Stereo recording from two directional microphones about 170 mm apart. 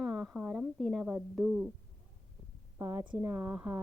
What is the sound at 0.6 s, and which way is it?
Speech, centre (ahead or behind).